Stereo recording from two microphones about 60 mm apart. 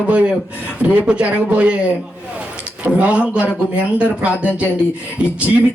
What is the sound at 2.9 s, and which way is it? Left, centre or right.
Speech, right.